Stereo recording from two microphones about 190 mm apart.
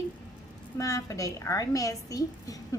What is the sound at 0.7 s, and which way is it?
A woman's voice, 15° left (ahead or behind).